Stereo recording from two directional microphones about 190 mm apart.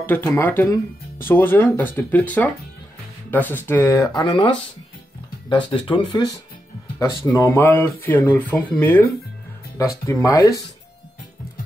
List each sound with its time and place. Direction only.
0.0 s speech: 10° left (ahead or behind)